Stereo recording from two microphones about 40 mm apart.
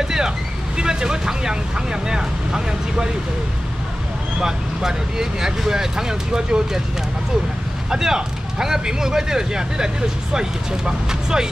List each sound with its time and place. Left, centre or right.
0.0 s vehicle: centre
0.7 s speech: centre
4.4 s speech: centre
7.9 s speech: centre
10.9 s speech: centre